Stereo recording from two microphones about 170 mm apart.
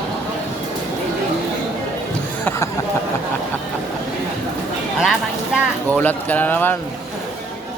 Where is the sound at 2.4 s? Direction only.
15° left (ahead or behind).